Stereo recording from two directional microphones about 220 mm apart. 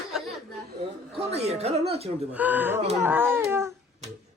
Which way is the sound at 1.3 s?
30° right (ahead or behind).